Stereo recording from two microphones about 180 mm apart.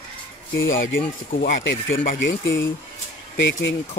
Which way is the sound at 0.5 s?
90° left.